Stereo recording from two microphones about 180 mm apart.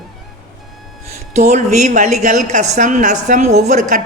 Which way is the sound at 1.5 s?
40° right (ahead or behind).